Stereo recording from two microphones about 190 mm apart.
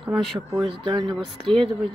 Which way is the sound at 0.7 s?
25° right (ahead or behind).